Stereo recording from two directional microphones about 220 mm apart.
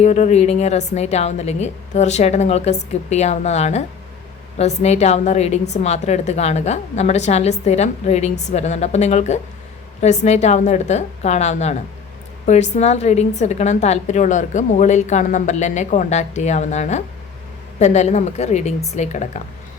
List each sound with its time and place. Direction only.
0.0 s a woman's voice: 30° left (ahead or behind)